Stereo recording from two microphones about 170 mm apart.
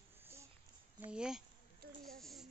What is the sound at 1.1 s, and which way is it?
Speech, 5° right (ahead or behind).